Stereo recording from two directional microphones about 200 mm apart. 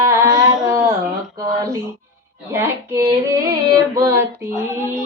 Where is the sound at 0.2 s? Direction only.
20° right (ahead or behind).